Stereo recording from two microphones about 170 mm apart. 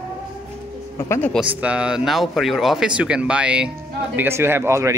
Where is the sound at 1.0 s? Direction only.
15° left (ahead or behind).